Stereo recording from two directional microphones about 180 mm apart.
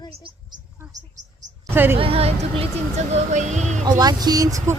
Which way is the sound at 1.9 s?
30° right (ahead or behind).